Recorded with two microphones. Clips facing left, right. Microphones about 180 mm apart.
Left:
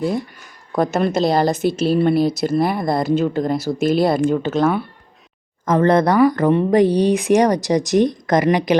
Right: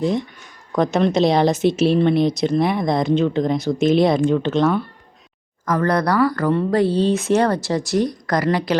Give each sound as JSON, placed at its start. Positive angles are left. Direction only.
{"t": 0.0, "sound": "speech", "side_deg": 5}
{"t": 5.6, "sound": "speech", "side_deg": 25}